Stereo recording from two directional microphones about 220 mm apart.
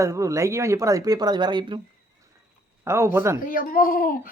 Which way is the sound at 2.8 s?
10° right (ahead or behind).